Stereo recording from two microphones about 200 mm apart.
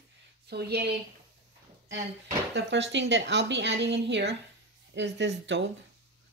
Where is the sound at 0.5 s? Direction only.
55° right (ahead or behind).